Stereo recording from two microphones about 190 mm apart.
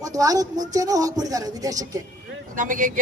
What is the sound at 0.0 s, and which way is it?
Speech, 20° right (ahead or behind).